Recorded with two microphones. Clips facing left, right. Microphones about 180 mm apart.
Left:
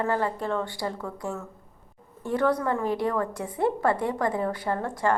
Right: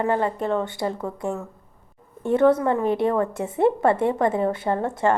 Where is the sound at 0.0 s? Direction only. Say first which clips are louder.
Right 4 dB; 20° right (ahead or behind).